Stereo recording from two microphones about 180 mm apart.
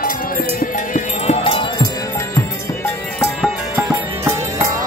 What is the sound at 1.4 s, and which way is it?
Music, 30° left (ahead or behind).